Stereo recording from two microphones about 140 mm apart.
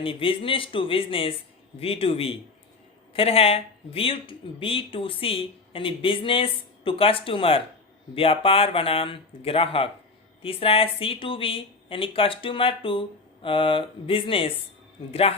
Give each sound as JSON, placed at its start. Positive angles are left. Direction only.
{"t": 0.0, "sound": "a man's voice", "side_deg": 40}